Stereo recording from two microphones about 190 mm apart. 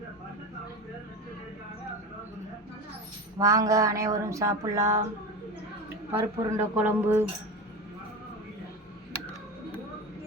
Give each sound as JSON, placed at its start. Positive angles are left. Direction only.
{"t": 3.3, "sound": "speech", "side_deg": -20}
{"t": 6.1, "sound": "speech", "side_deg": -10}